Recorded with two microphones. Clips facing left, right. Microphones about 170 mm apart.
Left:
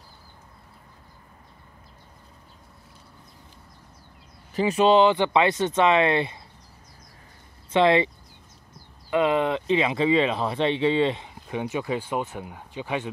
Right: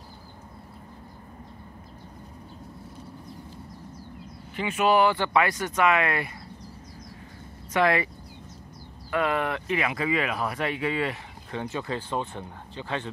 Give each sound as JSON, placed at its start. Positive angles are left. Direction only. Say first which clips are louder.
{"t": 4.6, "sound": "speech", "louder": "left 7 dB", "side_deg": 35}
{"t": 4.8, "sound": "speech", "louder": "left 3 dB", "side_deg": 20}
{"t": 7.7, "sound": "speech", "louder": "left 4 dB", "side_deg": 25}
{"t": 9.1, "sound": "speech", "louder": "left 4 dB", "side_deg": 20}